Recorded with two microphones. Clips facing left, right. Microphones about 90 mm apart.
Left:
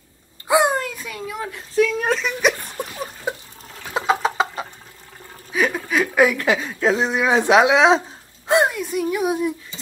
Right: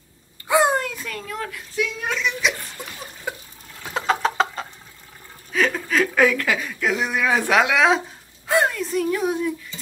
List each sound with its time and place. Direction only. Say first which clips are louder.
0.6 s a sound: right 1 dB; centre (ahead or behind)
1.5 s speech: left 11 dB; 40° left (ahead or behind)
2.8 s a sound: left 7 dB; 50° left (ahead or behind)
3.3 s water: left 3 dB; 20° left (ahead or behind)
3.9 s chicken: left 2 dB; 5° left (ahead or behind)
5.5 s speech: left 1 dB; 10° left (ahead or behind)